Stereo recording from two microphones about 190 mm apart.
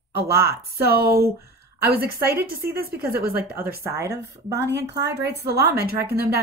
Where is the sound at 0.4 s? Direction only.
55° right (ahead or behind).